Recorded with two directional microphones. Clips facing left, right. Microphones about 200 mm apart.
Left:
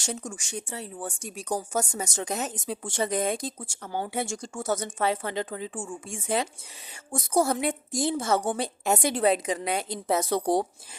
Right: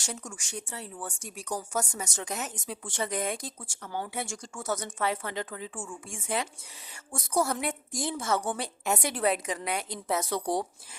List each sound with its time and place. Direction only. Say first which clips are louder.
0.0 s speech: left 5 dB; 25° left (ahead or behind)
2.1 s speech: left 5 dB; 35° left (ahead or behind)
7.4 s speech: left 5 dB; 25° left (ahead or behind)
10.2 s speech: left 5 dB; 35° left (ahead or behind)